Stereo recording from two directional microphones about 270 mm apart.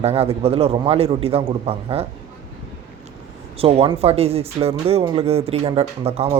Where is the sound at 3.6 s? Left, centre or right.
Right.